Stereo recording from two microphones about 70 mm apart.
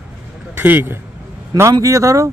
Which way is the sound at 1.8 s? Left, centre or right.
Right.